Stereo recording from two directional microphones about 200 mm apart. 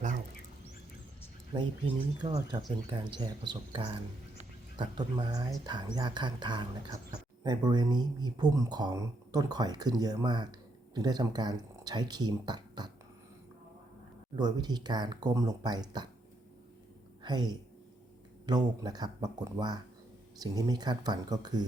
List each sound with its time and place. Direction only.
1.5 s speech: 20° right (ahead or behind)
14.3 s speech: 20° right (ahead or behind)
17.2 s speech: 20° right (ahead or behind)